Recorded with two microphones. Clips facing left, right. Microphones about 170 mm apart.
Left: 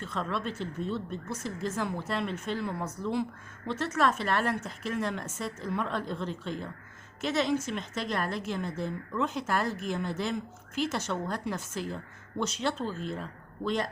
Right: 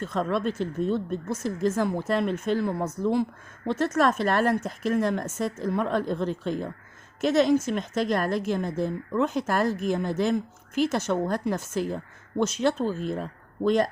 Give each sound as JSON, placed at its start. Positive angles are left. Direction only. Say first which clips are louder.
{"t": 0.0, "sound": "a woman's voice", "louder": "right 7 dB", "side_deg": -45}